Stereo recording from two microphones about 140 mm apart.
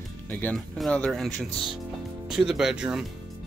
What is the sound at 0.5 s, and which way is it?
Speech, centre (ahead or behind).